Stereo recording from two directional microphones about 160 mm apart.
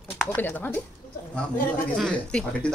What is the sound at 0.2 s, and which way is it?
Speech, 10° left (ahead or behind).